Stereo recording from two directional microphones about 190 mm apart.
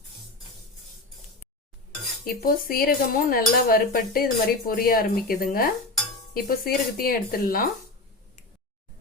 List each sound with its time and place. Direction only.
2.2 s cutlery: 50° left (ahead or behind)